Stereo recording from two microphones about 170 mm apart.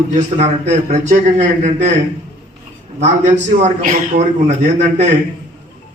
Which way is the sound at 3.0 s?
45° right (ahead or behind).